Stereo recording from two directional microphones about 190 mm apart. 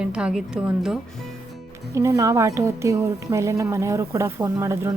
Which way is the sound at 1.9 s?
15° right (ahead or behind).